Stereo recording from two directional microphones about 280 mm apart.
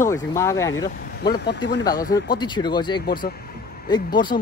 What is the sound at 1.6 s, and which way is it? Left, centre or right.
A man's voice, centre.